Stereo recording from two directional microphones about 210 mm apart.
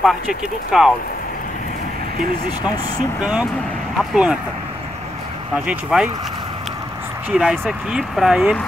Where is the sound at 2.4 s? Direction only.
20° left (ahead or behind).